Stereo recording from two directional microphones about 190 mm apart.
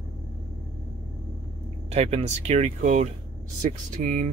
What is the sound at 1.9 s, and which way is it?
Speech, 35° right (ahead or behind).